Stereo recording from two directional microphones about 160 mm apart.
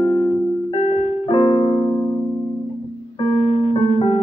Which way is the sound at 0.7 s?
30° left (ahead or behind).